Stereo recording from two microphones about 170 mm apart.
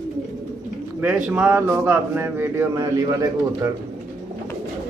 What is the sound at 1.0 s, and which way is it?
A man's voice, 10° right (ahead or behind).